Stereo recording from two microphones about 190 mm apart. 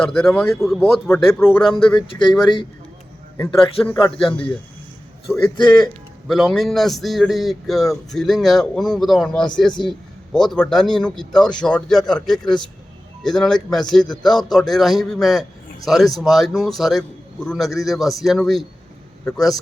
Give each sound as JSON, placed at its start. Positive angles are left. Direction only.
{"t": 0.0, "sound": "a man's voice", "side_deg": 5}
{"t": 2.3, "sound": "speech", "side_deg": 25}
{"t": 3.3, "sound": "speech", "side_deg": 10}
{"t": 5.8, "sound": "a man's voice", "side_deg": 0}